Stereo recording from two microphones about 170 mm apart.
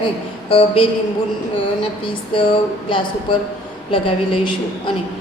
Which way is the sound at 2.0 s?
30° left (ahead or behind).